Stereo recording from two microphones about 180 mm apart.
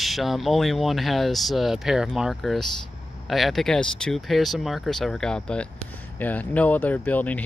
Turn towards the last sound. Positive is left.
turn(degrees=10)  # may be behind; listen again after turning